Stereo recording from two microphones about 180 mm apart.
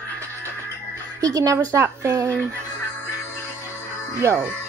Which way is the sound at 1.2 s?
20° right (ahead or behind).